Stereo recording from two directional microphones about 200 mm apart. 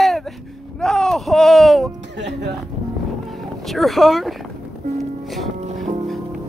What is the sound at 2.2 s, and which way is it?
Speech, 60° right (ahead or behind).